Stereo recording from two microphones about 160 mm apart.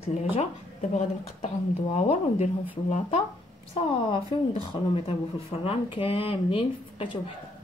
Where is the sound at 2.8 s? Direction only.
45° left (ahead or behind).